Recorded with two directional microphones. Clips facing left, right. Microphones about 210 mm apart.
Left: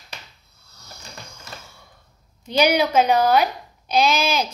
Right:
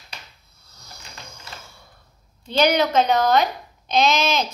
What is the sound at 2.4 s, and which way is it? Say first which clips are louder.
A child's voice: even; 10° left (ahead or behind).